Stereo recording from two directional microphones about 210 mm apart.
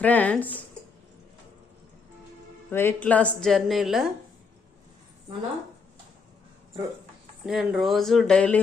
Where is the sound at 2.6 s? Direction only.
10° left (ahead or behind).